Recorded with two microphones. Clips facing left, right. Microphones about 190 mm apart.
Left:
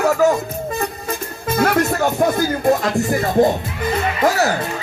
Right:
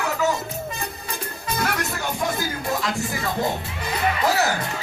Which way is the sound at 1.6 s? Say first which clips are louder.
Left 11 dB; 50° left (ahead or behind).